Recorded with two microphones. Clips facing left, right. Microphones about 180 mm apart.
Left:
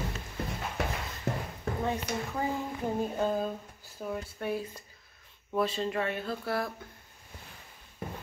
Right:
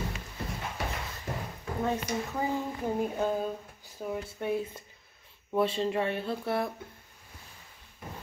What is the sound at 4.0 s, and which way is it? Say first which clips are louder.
Speech: right 1 dB; 15° right (ahead or behind).